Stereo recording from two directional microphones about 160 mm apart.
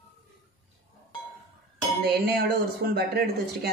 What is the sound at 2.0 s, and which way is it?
Speech, 80° right.